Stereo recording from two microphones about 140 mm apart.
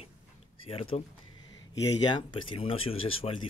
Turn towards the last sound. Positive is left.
turn(degrees=40)  # may be behind; listen again after turning